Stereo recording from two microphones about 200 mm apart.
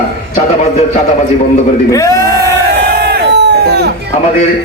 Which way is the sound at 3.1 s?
55° right (ahead or behind).